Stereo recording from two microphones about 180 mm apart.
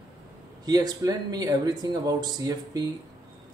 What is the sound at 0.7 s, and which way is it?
Speech, 20° right (ahead or behind).